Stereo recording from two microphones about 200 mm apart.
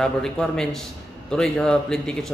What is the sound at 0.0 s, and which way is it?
A man's voice, 5° left (ahead or behind).